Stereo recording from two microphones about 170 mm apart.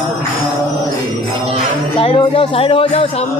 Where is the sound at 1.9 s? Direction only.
35° left (ahead or behind).